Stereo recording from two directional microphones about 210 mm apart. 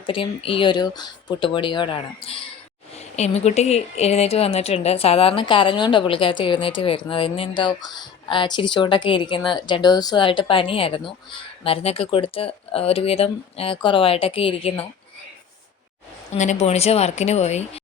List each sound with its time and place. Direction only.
0.0 s a woman's voice: 25° left (ahead or behind)
16.3 s a woman's voice: 35° left (ahead or behind)